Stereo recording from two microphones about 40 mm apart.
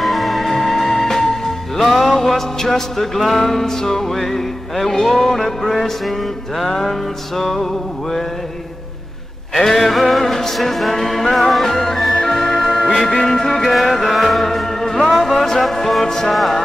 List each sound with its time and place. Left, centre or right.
0.0 s music: centre
9.6 s music: centre